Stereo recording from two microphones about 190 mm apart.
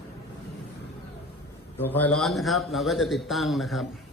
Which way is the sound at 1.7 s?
10° left (ahead or behind).